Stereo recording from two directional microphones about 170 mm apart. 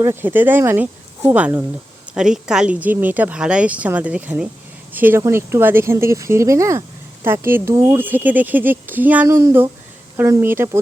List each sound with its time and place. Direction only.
0.0 s speech: 15° right (ahead or behind)